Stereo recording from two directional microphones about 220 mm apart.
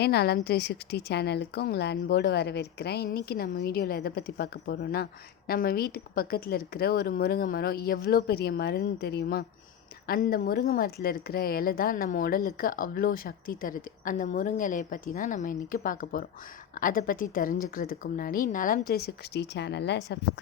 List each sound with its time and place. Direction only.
0.0 s a woman's voice: 45° left (ahead or behind)